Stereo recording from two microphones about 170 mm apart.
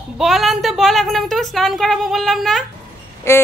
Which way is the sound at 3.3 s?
15° left (ahead or behind).